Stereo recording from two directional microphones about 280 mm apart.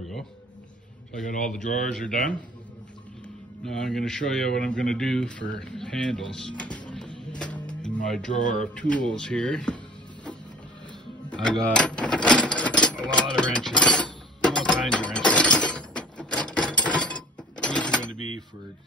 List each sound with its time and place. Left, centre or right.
1.2 s speech: left
3.6 s a man's voice: centre
7.3 s music: centre
8.3 s speech: left
8.7 s a man's voice: centre
11.4 s a sound: centre
14.4 s music: centre
15.1 s mechanisms: centre
17.6 s a sound: centre